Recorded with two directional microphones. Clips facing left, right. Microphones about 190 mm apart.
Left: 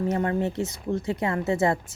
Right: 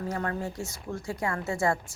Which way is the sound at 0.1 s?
20° left (ahead or behind).